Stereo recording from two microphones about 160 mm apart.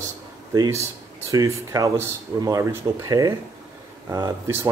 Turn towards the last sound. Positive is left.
turn(degrees=-20)  # may be behind; listen again after turning